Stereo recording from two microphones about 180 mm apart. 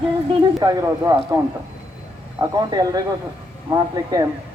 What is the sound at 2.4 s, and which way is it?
Speech, 20° right (ahead or behind).